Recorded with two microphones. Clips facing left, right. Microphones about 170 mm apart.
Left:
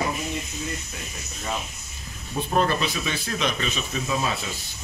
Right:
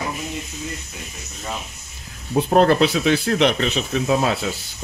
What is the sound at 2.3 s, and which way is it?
Speech, 85° right.